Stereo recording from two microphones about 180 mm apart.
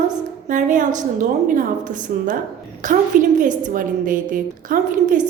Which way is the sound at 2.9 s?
50° right (ahead or behind).